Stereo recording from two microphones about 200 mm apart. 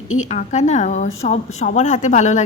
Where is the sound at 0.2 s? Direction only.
35° left (ahead or behind).